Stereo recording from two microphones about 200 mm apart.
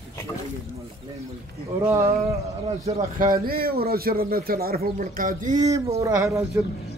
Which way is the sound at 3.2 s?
45° right (ahead or behind).